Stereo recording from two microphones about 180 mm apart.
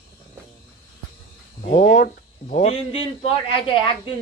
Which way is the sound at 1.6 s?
45° left (ahead or behind).